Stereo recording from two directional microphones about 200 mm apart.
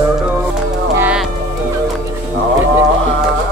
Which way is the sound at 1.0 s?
5° right (ahead or behind).